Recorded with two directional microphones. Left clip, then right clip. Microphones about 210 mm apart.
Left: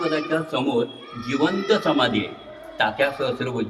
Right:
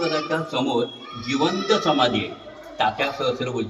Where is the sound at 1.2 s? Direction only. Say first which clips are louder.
Even; 10° left (ahead or behind).